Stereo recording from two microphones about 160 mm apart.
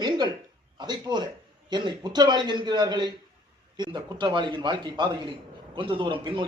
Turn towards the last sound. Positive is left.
turn(degrees=-30)  # may be behind; listen again after turning